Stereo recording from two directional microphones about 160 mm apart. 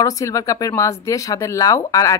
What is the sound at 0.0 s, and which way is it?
Speech, 20° left (ahead or behind).